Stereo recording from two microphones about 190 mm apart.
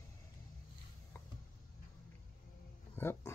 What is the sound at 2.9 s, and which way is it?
Roaring cats, 15° left (ahead or behind).